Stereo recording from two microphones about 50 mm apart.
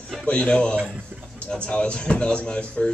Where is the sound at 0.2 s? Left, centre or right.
Left.